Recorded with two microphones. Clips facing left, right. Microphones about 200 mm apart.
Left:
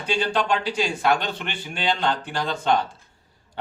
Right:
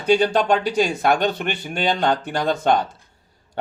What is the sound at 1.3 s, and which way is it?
Speech, 45° right (ahead or behind).